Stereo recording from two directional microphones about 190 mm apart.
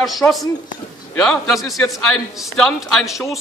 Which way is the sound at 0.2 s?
15° left (ahead or behind).